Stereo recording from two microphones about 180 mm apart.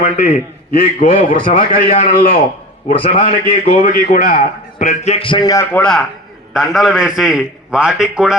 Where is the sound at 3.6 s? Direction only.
50° left (ahead or behind).